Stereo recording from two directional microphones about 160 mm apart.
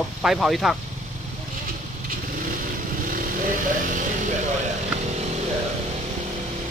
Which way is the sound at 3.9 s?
55° right (ahead or behind).